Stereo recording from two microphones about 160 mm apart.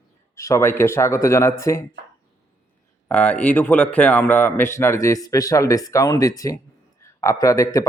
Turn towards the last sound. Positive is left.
turn(degrees=20)  # may be behind; listen again after turning